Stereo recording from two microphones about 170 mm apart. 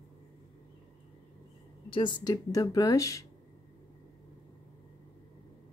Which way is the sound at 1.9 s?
30° left (ahead or behind).